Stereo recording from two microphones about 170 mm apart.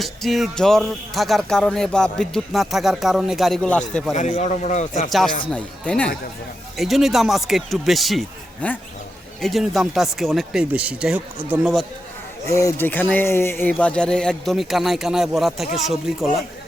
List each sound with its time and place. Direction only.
0.0 s speech: centre (ahead or behind)
4.1 s a man's voice: 45° left (ahead or behind)
5.5 s speech: 5° left (ahead or behind)
12.5 s speech: 20° left (ahead or behind); by 16.4 s centre (ahead or behind)